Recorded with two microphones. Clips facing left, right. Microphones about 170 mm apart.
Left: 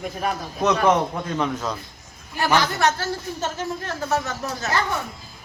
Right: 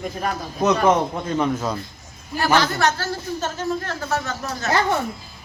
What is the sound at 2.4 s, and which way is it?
A woman's voice, 20° left (ahead or behind).